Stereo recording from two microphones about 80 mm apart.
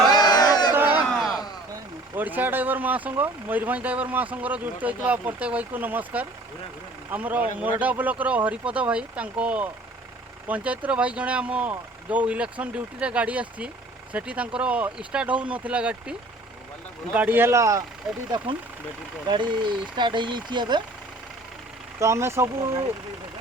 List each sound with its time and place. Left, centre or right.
0.1 s crowd: left
1.1 s a sound: centre
2.1 s speech: right
19.3 s speech: right
21.9 s speech: right